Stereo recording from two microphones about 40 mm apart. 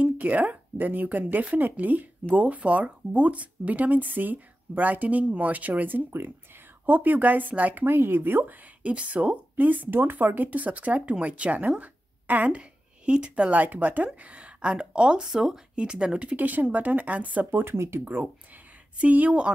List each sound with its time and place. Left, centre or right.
0.0 s speech: right
7.8 s speech: right
8.8 s speech: right
11.8 s a sound: right
12.4 s speech: right
13.5 s speech: right
16.3 s speech: right
17.5 s speech: right
18.1 s speech: right